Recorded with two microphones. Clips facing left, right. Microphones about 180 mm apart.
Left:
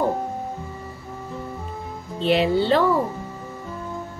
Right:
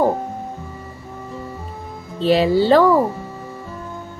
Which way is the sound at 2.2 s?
40° right (ahead or behind).